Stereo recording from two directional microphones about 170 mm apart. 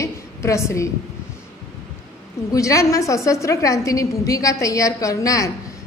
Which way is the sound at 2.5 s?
20° left (ahead or behind).